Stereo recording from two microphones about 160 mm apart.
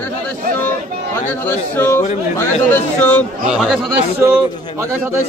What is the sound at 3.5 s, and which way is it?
Speech, centre (ahead or behind).